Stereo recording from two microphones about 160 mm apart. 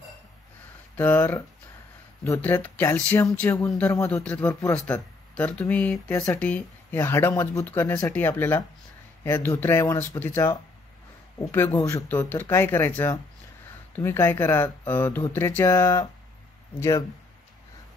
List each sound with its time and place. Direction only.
0.9 s speech: 10° left (ahead or behind)
3.9 s speech: 20° left (ahead or behind)